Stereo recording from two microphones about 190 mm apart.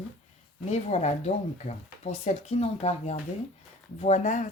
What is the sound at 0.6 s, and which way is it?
Speech, 35° left (ahead or behind).